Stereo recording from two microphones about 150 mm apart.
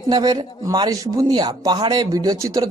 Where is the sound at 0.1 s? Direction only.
25° right (ahead or behind).